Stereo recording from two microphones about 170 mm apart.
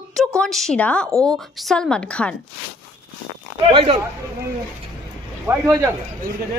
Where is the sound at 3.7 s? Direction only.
35° right (ahead or behind).